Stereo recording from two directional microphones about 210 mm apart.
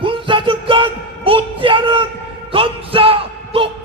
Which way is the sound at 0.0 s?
25° right (ahead or behind).